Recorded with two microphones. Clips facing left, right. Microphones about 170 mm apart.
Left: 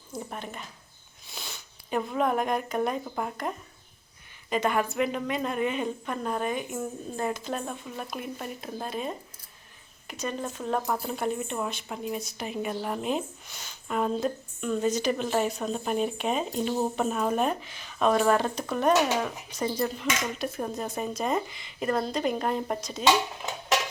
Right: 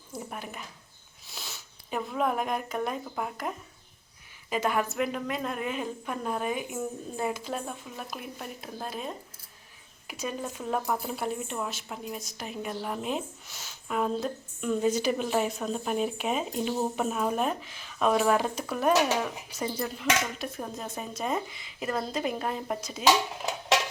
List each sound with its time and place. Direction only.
0.1 s speech: 5° right (ahead or behind)